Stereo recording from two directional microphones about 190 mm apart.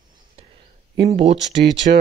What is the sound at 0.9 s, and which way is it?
Speech, 20° right (ahead or behind).